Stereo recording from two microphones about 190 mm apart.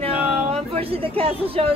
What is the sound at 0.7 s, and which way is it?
Speech, 30° right (ahead or behind).